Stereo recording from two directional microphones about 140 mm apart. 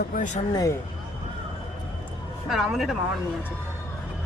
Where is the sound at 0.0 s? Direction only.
80° left.